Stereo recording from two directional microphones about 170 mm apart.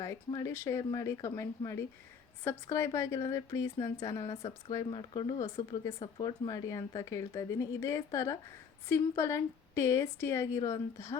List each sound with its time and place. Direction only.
0.3 s a woman's voice: 20° left (ahead or behind)